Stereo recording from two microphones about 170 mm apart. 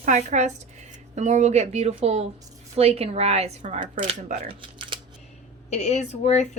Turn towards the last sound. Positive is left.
turn(degrees=40)  # may be behind; listen again after turning